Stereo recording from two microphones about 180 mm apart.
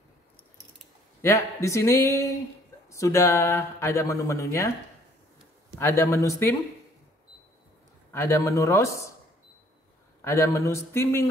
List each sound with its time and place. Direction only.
1.2 s speech: 15° left (ahead or behind)
5.8 s speech: 15° left (ahead or behind)
8.1 s speech: 15° left (ahead or behind)
10.2 s speech: 15° left (ahead or behind)